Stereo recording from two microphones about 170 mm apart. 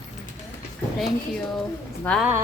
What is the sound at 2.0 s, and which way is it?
Speech, 5° left (ahead or behind).